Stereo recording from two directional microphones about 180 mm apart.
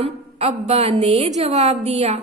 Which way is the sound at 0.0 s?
35° right (ahead or behind).